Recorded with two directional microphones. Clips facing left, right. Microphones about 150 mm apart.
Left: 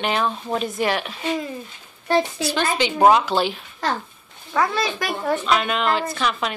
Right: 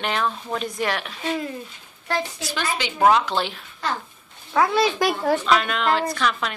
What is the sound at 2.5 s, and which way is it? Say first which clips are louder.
Speech: left 5 dB; 25° left (ahead or behind).